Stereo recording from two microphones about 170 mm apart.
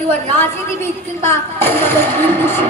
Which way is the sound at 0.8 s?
15° left (ahead or behind).